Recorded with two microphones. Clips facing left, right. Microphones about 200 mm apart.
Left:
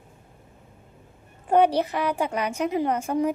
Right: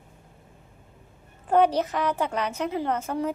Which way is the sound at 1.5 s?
10° left (ahead or behind).